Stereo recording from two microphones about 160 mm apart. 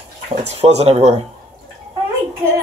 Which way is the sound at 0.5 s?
40° right (ahead or behind).